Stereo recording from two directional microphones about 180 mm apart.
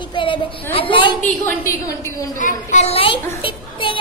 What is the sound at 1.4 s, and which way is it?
Speech, 15° left (ahead or behind).